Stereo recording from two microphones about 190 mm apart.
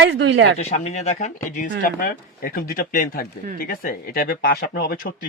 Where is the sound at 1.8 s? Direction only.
50° left (ahead or behind).